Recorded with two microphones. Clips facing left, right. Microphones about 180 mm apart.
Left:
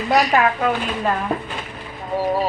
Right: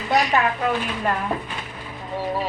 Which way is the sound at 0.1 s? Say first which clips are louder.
Left 3 dB; 35° left (ahead or behind).